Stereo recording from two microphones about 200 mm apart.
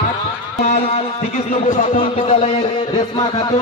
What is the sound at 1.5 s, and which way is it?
A man's voice, 35° left (ahead or behind).